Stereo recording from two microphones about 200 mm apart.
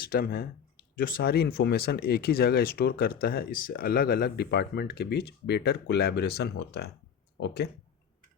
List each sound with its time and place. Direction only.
0.0 s speech: 50° left (ahead or behind)